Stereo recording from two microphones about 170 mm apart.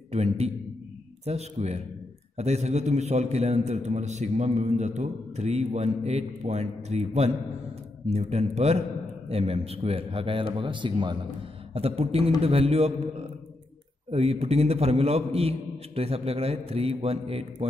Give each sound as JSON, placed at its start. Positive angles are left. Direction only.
{"t": 0.1, "sound": "a man's voice", "side_deg": -40}
{"t": 14.1, "sound": "a man's voice", "side_deg": -35}